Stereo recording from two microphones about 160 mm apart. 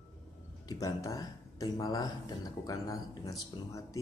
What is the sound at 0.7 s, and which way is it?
Speech, 20° left (ahead or behind).